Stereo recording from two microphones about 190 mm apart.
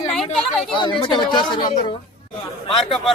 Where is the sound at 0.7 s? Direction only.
25° left (ahead or behind).